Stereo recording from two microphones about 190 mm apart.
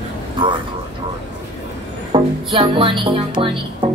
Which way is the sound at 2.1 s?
25° right (ahead or behind).